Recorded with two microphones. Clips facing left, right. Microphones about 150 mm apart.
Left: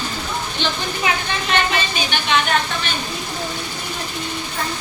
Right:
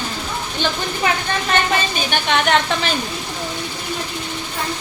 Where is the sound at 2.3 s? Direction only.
75° right (ahead or behind).